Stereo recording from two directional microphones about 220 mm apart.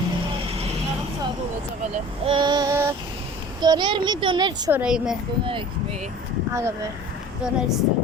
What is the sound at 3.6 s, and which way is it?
Speech, 20° right (ahead or behind).